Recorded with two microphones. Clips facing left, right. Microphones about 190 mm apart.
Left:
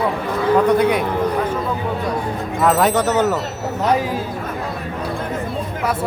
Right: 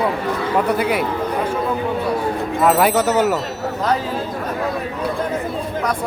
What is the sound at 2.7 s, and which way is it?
Speech, 5° right (ahead or behind).